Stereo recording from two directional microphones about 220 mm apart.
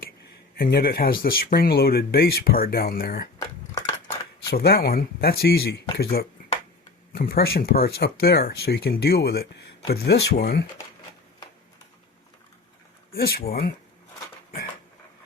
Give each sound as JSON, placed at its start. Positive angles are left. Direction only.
{"t": 0.5, "sound": "speech", "side_deg": 40}
{"t": 3.3, "sound": "dishes", "side_deg": 15}
{"t": 4.4, "sound": "speech", "side_deg": 45}
{"t": 13.1, "sound": "a sound", "side_deg": 45}
{"t": 13.5, "sound": "speech", "side_deg": 45}